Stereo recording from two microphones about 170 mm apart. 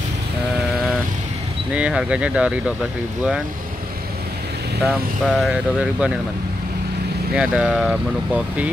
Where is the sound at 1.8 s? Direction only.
5° right (ahead or behind).